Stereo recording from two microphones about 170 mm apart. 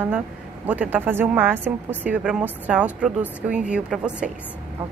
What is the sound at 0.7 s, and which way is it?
A woman's voice, 10° right (ahead or behind).